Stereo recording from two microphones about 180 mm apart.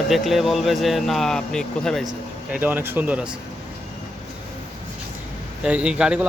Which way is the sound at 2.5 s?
10° right (ahead or behind).